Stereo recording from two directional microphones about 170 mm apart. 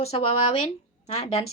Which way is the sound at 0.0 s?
35° left (ahead or behind).